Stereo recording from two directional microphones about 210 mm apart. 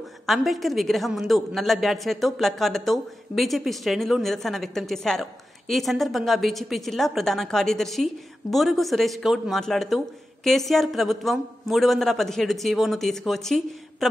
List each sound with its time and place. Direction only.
0.3 s a woman's voice: centre (ahead or behind)